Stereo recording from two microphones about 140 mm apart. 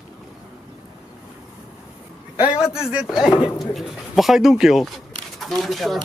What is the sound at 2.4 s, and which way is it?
Speech, 5° right (ahead or behind).